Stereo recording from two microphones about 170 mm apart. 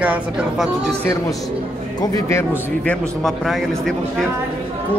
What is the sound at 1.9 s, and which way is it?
Speech, 20° left (ahead or behind).